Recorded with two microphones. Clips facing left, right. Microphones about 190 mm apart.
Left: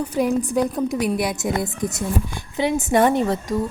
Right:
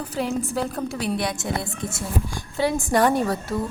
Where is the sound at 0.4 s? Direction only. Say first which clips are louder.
Left 5 dB; 15° left (ahead or behind).